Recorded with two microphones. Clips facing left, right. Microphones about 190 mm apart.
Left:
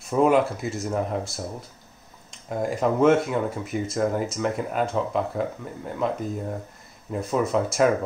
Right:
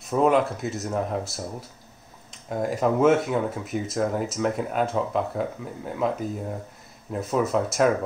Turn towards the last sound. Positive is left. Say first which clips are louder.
# left 1 dB
turn(degrees=0)  # may be behind; listen again after turning